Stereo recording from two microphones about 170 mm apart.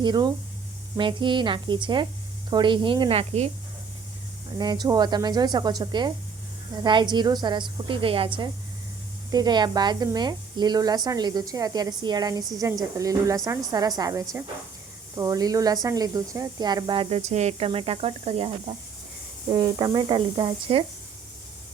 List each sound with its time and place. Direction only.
0.0 s speech: 25° right (ahead or behind)
4.5 s speech: 25° right (ahead or behind)